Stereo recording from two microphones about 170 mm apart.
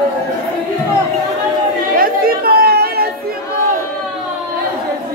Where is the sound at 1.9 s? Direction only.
60° right (ahead or behind).